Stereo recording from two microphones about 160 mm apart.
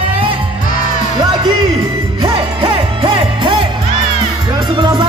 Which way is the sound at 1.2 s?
30° right (ahead or behind).